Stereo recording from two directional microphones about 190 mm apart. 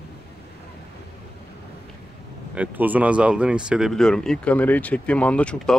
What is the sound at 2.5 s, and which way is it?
Speech, 10° right (ahead or behind).